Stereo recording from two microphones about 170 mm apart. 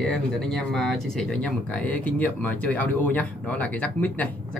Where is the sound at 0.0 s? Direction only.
5° left (ahead or behind).